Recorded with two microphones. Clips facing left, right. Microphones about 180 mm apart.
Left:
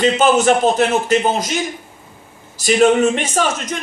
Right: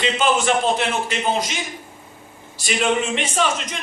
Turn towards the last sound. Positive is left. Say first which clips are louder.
# left 3 dB
turn(degrees=45)  # may be behind; listen again after turning